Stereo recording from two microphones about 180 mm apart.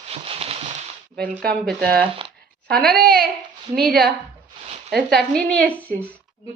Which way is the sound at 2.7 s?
5° left (ahead or behind).